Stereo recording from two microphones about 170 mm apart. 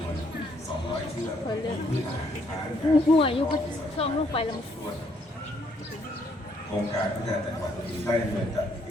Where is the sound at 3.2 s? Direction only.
30° left (ahead or behind).